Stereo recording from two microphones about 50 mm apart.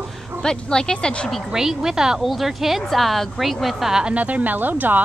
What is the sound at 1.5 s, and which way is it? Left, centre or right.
Speech, centre.